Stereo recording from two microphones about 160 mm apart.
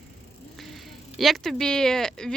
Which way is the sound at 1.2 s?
Centre (ahead or behind).